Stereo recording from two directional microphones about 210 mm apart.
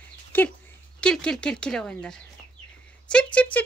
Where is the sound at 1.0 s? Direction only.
5° left (ahead or behind).